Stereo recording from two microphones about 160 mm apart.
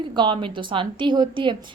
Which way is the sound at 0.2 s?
30° right (ahead or behind).